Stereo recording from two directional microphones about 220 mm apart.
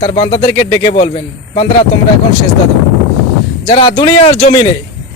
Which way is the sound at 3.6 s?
20° left (ahead or behind).